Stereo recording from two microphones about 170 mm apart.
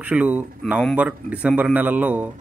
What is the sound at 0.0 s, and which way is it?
Speech, 10° right (ahead or behind).